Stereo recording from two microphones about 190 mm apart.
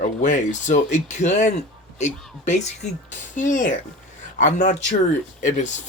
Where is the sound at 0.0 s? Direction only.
40° left (ahead or behind).